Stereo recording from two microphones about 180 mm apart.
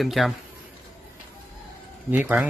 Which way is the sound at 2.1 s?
5° right (ahead or behind).